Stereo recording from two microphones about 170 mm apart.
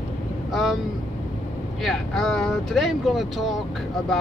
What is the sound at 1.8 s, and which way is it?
Speech, centre (ahead or behind).